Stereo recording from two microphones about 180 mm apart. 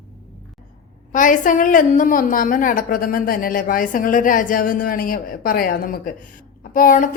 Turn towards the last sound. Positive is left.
turn(degrees=45)  # may be behind; listen again after turning